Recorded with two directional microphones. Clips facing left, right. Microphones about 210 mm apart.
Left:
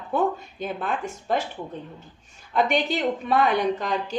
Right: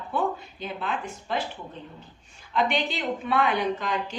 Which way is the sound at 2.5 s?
45° left (ahead or behind).